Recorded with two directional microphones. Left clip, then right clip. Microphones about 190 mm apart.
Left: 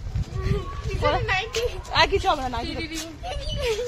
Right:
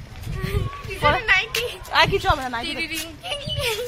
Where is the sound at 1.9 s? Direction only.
20° right (ahead or behind).